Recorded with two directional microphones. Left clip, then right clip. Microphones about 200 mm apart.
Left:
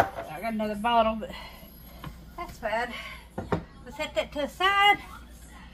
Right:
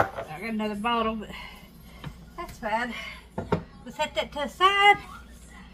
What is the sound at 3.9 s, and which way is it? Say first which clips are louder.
Speech: right 1 dB; 5° left (ahead or behind).